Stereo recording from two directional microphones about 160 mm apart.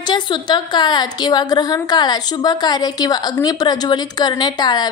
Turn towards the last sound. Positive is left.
turn(degrees=25)  # may be behind; listen again after turning